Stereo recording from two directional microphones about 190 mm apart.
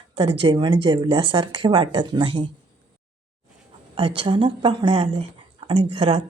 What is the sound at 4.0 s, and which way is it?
Speech, 25° right (ahead or behind).